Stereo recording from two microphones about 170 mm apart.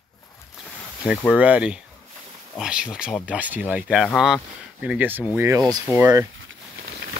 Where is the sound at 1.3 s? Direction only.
5° right (ahead or behind).